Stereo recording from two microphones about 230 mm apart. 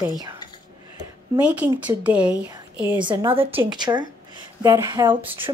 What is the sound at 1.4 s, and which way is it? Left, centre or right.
A woman's voice, centre.